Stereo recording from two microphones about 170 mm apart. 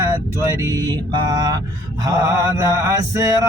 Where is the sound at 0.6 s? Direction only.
20° right (ahead or behind).